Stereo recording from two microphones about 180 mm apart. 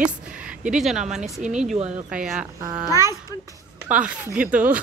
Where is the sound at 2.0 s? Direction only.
5° right (ahead or behind).